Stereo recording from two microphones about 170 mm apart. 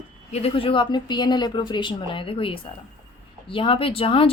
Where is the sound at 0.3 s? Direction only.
35° left (ahead or behind).